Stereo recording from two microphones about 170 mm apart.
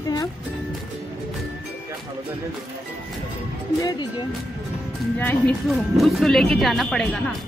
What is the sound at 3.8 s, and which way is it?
Speech, 20° left (ahead or behind).